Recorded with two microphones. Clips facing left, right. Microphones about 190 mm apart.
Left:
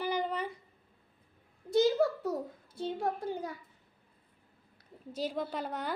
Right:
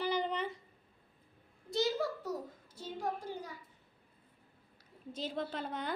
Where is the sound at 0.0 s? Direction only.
10° left (ahead or behind).